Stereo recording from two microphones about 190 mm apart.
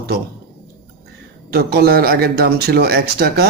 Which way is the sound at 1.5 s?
55° right (ahead or behind).